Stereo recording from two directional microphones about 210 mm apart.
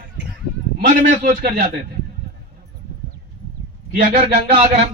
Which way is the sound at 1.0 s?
40° right (ahead or behind).